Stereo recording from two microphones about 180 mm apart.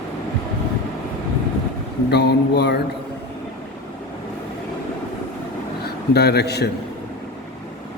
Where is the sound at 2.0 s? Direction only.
65° left (ahead or behind).